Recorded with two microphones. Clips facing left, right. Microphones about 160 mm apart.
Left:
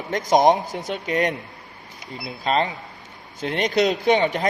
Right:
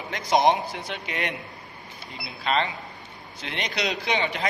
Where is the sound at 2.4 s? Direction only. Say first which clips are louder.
Left 3 dB; 40° left (ahead or behind).